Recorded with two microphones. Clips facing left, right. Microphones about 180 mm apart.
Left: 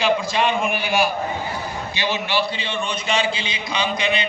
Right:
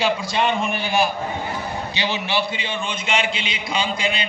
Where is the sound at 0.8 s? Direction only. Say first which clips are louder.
Even; 25° right (ahead or behind).